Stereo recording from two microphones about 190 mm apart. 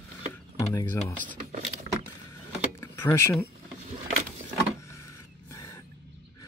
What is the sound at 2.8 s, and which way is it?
Power windows, 15° left (ahead or behind).